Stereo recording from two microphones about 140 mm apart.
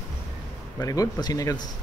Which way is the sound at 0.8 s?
25° left (ahead or behind).